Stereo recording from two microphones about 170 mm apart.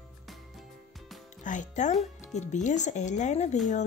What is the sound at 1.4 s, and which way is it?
Speech, 45° left (ahead or behind).